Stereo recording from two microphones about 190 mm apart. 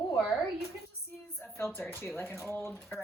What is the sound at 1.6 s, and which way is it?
A woman's voice, 10° left (ahead or behind).